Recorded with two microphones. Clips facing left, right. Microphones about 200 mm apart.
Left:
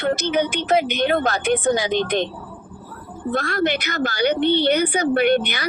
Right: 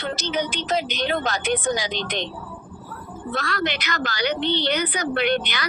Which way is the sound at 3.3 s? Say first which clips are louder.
Left 5 dB; 50° left (ahead or behind).